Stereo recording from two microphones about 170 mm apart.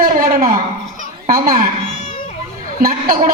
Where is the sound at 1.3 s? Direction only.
55° right (ahead or behind).